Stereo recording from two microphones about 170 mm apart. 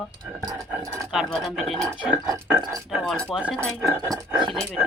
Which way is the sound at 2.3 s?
15° right (ahead or behind).